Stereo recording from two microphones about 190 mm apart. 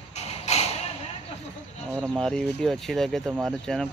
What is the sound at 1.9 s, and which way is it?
Speech, 10° right (ahead or behind).